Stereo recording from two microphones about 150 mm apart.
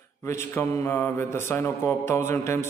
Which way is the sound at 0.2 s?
20° left (ahead or behind).